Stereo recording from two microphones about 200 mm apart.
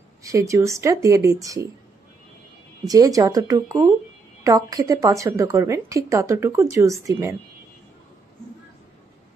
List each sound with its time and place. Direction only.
0.2 s a woman's voice: 15° right (ahead or behind)
2.8 s a woman's voice: 20° right (ahead or behind)